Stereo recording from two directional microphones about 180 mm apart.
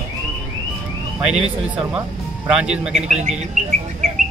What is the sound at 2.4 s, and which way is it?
Speech, 5° right (ahead or behind).